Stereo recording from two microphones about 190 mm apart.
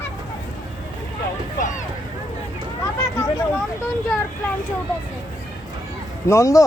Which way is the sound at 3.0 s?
15° left (ahead or behind).